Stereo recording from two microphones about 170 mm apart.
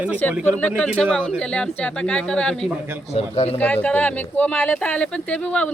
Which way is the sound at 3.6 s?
10° left (ahead or behind).